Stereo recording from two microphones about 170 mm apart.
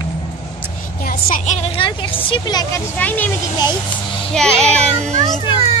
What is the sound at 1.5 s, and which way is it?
A woman's voice, 30° left (ahead or behind).